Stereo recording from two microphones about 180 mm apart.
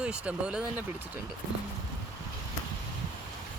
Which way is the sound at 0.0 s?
5° right (ahead or behind).